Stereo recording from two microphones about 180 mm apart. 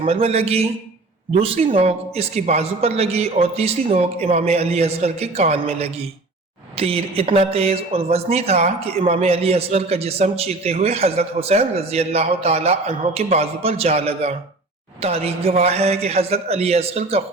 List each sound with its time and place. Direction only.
0.0 s a man's voice: 35° right (ahead or behind)